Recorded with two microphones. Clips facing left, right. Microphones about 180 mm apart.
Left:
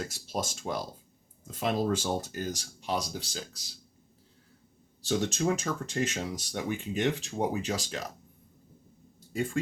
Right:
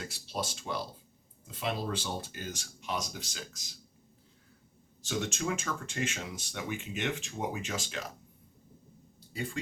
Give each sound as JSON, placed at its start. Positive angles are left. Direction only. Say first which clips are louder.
{"t": 0.0, "sound": "speech", "louder": "left 3 dB", "side_deg": 45}
{"t": 5.0, "sound": "speech", "louder": "left 5 dB", "side_deg": 35}
{"t": 9.3, "sound": "speech", "louder": "left 6 dB", "side_deg": 50}